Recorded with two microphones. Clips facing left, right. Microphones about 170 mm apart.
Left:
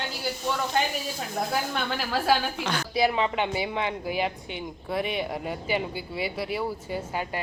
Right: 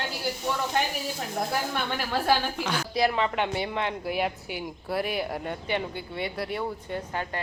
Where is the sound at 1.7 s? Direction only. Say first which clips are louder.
Even; centre (ahead or behind).